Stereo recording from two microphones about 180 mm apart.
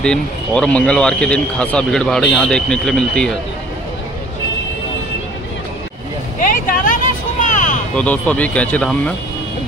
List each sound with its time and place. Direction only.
0.0 s speech: 5° left (ahead or behind)
6.5 s vehicle: 50° left (ahead or behind)
7.9 s speech: 5° left (ahead or behind)